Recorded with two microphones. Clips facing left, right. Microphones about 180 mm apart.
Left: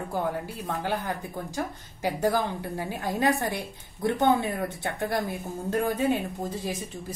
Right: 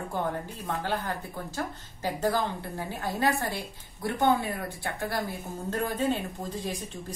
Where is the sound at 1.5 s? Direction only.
10° left (ahead or behind).